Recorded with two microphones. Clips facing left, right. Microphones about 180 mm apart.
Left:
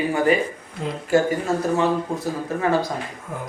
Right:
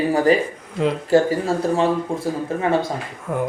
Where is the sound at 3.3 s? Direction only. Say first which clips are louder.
Right 11 dB; 60° right (ahead or behind).